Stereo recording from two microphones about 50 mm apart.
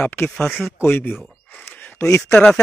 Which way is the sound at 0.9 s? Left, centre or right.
Left.